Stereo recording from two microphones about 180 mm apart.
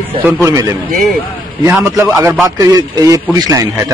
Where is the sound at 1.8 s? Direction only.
15° right (ahead or behind).